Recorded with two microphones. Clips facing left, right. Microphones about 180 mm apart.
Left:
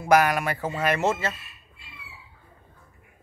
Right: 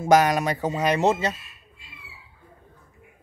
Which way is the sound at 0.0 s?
20° right (ahead or behind).